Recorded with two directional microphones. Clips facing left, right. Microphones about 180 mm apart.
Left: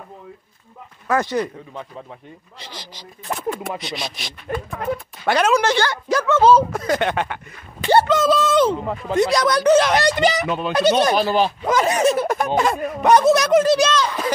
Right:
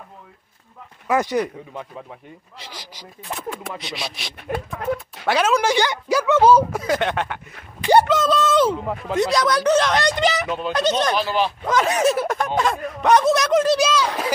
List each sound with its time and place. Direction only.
1.0 s speech: 15° right (ahead or behind)
3.4 s speech: centre (ahead or behind)
11.1 s speech: 40° left (ahead or behind)
11.6 s speech: 5° left (ahead or behind)